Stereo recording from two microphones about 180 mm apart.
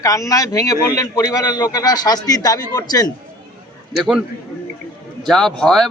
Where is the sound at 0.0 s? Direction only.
20° left (ahead or behind).